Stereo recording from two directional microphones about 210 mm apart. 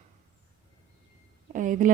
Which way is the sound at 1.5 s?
40° right (ahead or behind).